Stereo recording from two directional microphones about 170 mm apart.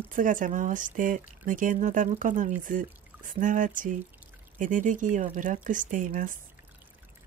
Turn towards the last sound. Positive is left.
turn(degrees=-50)  # may be behind; listen again after turning